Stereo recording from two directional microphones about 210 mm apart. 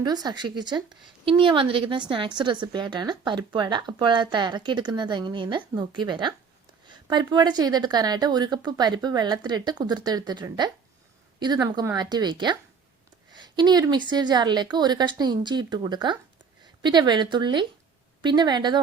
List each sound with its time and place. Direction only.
0.0 s a woman's voice: 20° right (ahead or behind)